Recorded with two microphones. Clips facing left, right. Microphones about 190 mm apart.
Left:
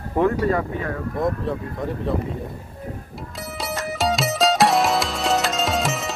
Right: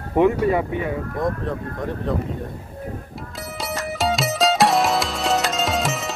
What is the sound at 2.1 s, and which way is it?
Speech, 5° left (ahead or behind).